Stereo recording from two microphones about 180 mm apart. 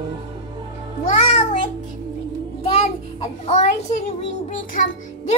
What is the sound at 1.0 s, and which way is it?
Music, 35° left (ahead or behind).